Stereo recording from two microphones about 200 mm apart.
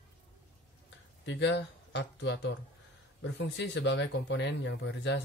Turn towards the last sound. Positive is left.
turn(degrees=65)  # may be behind; listen again after turning